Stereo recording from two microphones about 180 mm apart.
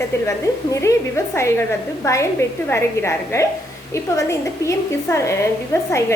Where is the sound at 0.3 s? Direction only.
15° left (ahead or behind).